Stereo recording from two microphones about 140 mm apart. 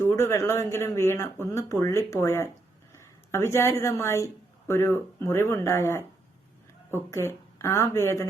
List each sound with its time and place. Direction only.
0.0 s speech: 20° left (ahead or behind)